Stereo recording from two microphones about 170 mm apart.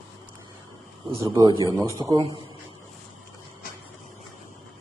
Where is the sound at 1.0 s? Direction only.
25° right (ahead or behind).